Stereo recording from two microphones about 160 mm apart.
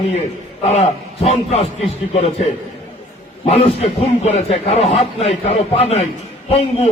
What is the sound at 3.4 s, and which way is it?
A man's voice, 40° left (ahead or behind).